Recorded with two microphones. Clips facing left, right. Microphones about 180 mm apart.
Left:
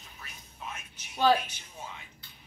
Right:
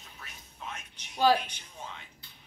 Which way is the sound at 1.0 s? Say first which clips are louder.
Left 1 dB; 5° left (ahead or behind).